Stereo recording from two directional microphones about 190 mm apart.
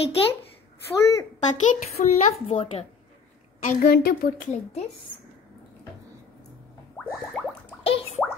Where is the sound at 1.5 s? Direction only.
40° left (ahead or behind).